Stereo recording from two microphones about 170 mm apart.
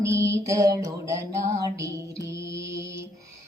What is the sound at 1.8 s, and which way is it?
Music, 20° right (ahead or behind).